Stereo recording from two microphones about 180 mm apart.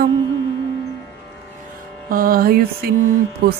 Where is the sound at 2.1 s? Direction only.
50° right (ahead or behind).